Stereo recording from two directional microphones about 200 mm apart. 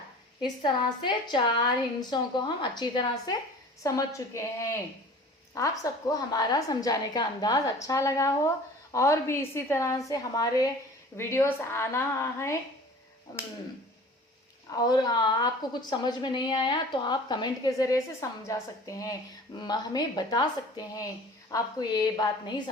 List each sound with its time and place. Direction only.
0.6 s a woman's voice: 25° left (ahead or behind)
5.8 s a woman's voice: 20° left (ahead or behind)
14.7 s a woman's voice: 20° left (ahead or behind)